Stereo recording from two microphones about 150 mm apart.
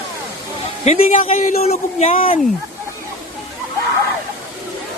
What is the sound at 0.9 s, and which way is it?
A man's voice, 45° left (ahead or behind).